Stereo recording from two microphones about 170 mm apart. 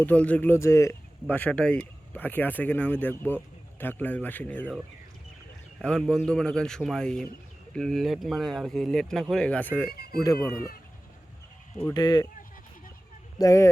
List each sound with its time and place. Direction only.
0.0 s speech: 10° left (ahead or behind)
5.8 s speech: 5° left (ahead or behind)
9.9 s speech: 65° left (ahead or behind)
11.9 s speech: 25° left (ahead or behind)
13.4 s speech: 20° left (ahead or behind)